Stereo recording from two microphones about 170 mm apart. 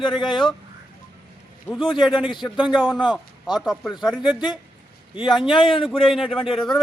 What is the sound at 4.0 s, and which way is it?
Speech, 5° right (ahead or behind).